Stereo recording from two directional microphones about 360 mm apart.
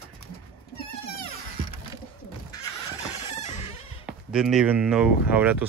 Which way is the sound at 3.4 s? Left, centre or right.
Centre.